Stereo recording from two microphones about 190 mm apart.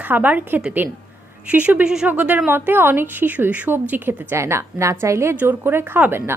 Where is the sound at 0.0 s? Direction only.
10° right (ahead or behind).